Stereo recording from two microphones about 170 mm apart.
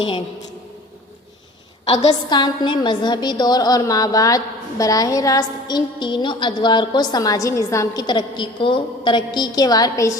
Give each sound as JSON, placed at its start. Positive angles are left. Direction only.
{"t": 2.0, "sound": "a woman's voice", "side_deg": 25}